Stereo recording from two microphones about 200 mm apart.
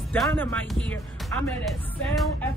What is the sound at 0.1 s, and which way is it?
Speech, 10° left (ahead or behind).